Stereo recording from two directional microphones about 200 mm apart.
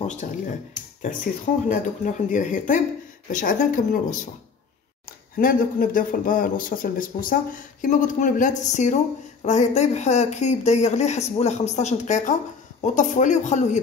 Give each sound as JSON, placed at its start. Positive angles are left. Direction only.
{"t": 0.0, "sound": "speech", "side_deg": 35}
{"t": 1.7, "sound": "speech", "side_deg": 40}